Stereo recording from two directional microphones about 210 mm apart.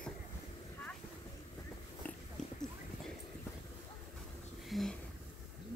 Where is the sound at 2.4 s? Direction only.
Centre (ahead or behind).